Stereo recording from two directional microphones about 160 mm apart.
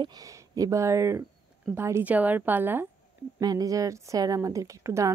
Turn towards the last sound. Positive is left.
turn(degrees=-20)  # may be behind; listen again after turning